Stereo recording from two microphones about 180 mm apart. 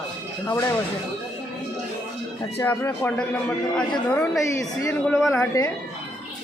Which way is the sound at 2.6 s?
15° left (ahead or behind).